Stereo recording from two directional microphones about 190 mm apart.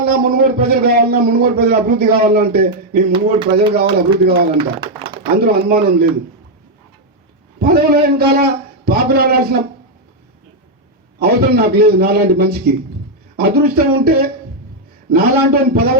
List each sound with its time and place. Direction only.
0.0 s a man's voice: 50° right (ahead or behind)
3.1 s speech: 25° right (ahead or behind)
3.8 s a man's voice: 55° right (ahead or behind)
4.5 s speech: 25° right (ahead or behind)
5.2 s a man's voice: 55° right (ahead or behind)
7.6 s a man's voice: 55° right (ahead or behind)
11.2 s a man's voice: 55° right (ahead or behind)